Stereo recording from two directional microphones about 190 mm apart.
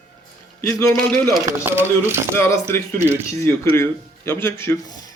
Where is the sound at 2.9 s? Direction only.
10° right (ahead or behind).